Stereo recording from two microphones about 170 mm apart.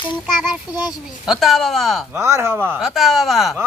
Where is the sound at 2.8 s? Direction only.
Centre (ahead or behind).